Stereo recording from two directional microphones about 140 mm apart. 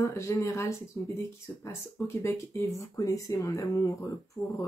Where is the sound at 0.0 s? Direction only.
20° left (ahead or behind).